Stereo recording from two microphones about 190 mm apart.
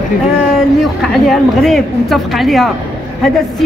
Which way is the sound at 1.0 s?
Centre (ahead or behind).